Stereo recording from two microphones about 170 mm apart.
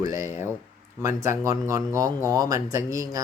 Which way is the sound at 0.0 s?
20° right (ahead or behind).